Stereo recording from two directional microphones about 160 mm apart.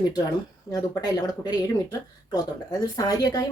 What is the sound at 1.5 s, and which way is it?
A woman's voice, 20° left (ahead or behind).